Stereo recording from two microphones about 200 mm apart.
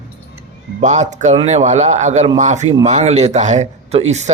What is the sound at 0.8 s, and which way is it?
Speech, 35° right (ahead or behind).